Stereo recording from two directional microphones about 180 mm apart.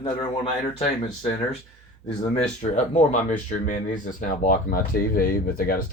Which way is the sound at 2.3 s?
40° left (ahead or behind).